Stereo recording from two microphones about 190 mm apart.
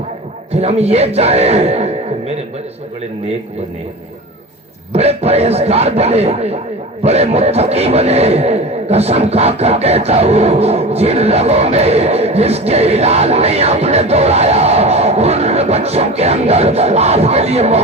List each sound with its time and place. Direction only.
0.5 s speech: 35° right (ahead or behind)
4.9 s a man's voice: 35° right (ahead or behind)